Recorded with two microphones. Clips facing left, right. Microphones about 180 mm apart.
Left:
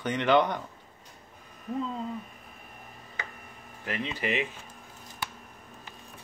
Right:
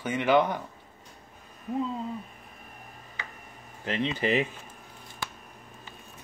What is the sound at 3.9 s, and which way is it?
Speech, 30° right (ahead or behind).